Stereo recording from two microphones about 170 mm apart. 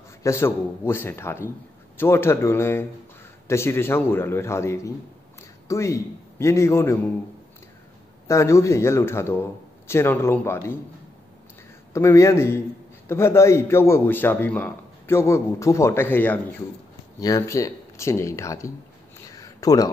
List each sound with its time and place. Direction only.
0.2 s a man's voice: 15° left (ahead or behind)
8.3 s a man's voice: 15° left (ahead or behind)
11.9 s a man's voice: 15° left (ahead or behind)
19.2 s a sound: 20° left (ahead or behind)